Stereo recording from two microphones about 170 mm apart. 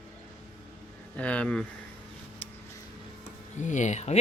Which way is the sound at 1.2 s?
10° left (ahead or behind).